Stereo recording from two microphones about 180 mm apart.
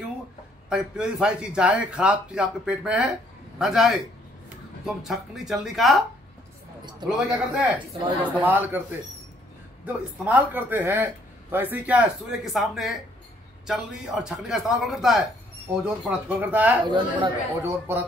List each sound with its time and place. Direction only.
0.7 s a man's voice: 5° right (ahead or behind)
7.1 s a man's voice: 5° right (ahead or behind)
9.8 s a man's voice: 10° right (ahead or behind)
16.8 s speech: 25° right (ahead or behind)
17.6 s a man's voice: 15° right (ahead or behind)